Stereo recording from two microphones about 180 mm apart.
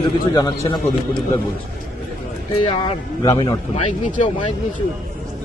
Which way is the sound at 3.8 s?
40° left (ahead or behind).